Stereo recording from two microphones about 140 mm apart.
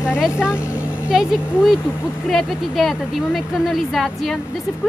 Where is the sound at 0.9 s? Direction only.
5° right (ahead or behind).